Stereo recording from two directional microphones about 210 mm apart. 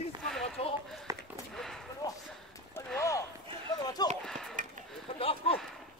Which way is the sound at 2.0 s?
15° left (ahead or behind).